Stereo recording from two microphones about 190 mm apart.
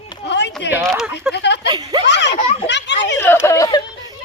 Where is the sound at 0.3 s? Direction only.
65° left (ahead or behind).